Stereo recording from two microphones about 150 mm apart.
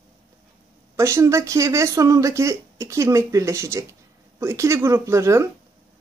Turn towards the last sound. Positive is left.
turn(degrees=-20)  # may be behind; listen again after turning